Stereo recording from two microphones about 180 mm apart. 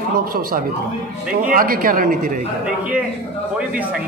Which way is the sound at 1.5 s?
50° right (ahead or behind).